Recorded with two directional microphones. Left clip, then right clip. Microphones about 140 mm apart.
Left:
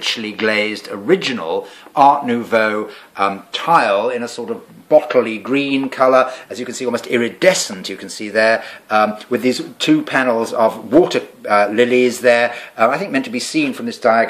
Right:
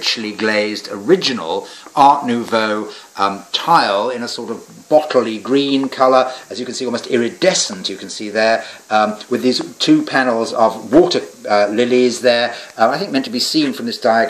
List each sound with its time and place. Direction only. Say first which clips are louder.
0.0 s speech: even; 35° left (ahead or behind)